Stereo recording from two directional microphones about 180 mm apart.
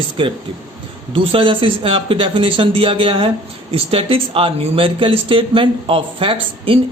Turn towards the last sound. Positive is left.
turn(degrees=-30)  # may be behind; listen again after turning